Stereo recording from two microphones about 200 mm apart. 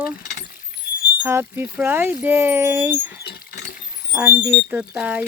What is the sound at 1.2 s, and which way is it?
Speech, 10° right (ahead or behind).